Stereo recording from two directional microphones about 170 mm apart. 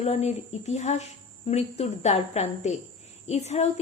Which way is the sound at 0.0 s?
40° left (ahead or behind).